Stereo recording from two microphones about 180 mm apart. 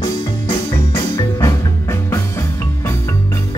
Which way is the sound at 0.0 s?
20° left (ahead or behind).